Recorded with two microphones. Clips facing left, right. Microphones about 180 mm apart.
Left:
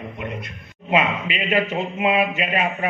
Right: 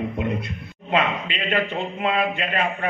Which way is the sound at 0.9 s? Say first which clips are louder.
Left 2 dB; 10° left (ahead or behind).